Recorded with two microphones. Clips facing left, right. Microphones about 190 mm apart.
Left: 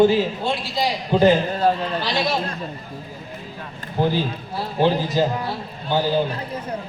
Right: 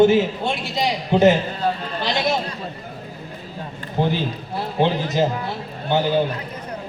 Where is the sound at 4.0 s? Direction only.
20° right (ahead or behind).